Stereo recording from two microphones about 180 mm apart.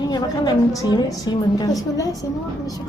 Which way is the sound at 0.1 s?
20° left (ahead or behind).